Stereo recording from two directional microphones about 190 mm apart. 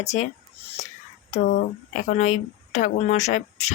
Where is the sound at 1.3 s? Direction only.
35° left (ahead or behind).